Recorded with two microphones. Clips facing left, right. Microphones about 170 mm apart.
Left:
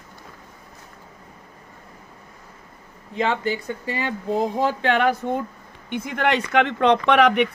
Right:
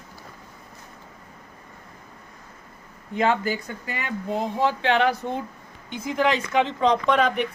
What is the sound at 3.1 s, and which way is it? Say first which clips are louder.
Speech: even; 30° left (ahead or behind).